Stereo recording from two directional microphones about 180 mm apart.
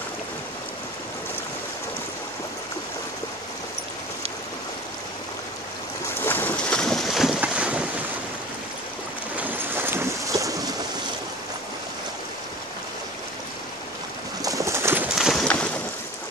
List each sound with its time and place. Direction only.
6.2 s boat: 10° left (ahead or behind); by 7.8 s 5° right (ahead or behind)
9.4 s train: 10° right (ahead or behind)
14.4 s bird: 20° right (ahead or behind)
15.1 s clip-clop: centre (ahead or behind)